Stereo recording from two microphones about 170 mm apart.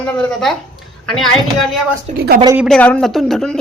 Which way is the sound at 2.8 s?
5° left (ahead or behind).